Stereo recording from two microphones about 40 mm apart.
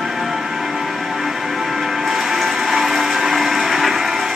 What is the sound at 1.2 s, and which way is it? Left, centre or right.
Music, centre.